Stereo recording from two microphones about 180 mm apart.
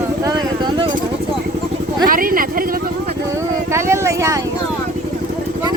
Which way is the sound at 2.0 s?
50° right (ahead or behind).